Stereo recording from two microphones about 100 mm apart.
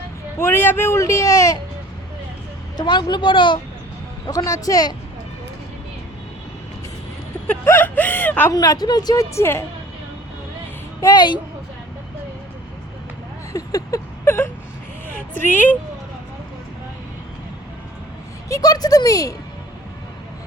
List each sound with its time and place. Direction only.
0.3 s speech: 25° left (ahead or behind)
2.7 s a woman's voice: 45° left (ahead or behind)
4.3 s speech: 35° left (ahead or behind)
7.4 s speech: 20° left (ahead or behind)
8.5 s speech: 40° left (ahead or behind)
9.3 s speech: 25° left (ahead or behind)
11.0 s a woman's voice: 45° left (ahead or behind)
13.5 s vehicle: 35° left (ahead or behind)
14.3 s whimper: 25° left (ahead or behind)
15.4 s speech: 20° left (ahead or behind)
18.4 s speech: 35° left (ahead or behind)